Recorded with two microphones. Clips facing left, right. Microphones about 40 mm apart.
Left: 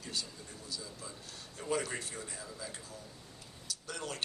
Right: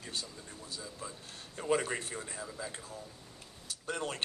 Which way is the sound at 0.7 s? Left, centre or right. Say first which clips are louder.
Right 2 dB; right.